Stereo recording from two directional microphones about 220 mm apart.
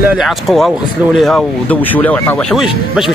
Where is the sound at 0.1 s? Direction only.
Centre (ahead or behind).